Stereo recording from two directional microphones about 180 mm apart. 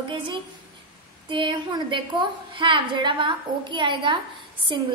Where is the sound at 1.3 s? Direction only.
25° right (ahead or behind).